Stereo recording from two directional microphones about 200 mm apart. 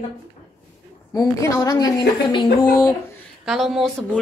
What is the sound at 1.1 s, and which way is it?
A woman's voice, 20° left (ahead or behind).